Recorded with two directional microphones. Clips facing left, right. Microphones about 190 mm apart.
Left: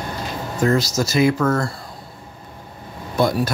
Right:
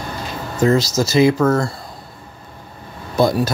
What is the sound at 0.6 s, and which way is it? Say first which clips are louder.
Speech: right 3 dB; 25° right (ahead or behind).